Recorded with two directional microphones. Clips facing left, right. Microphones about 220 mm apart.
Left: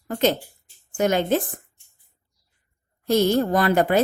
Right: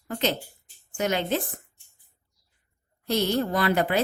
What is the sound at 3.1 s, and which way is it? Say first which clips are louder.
Speech: left 6 dB; 50° left (ahead or behind).